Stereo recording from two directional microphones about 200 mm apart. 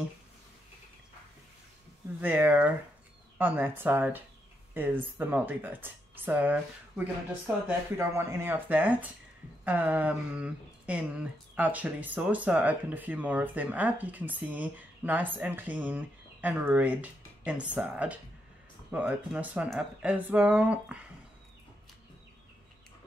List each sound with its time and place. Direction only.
2.2 s speech: 10° right (ahead or behind)
7.6 s speech: 15° right (ahead or behind)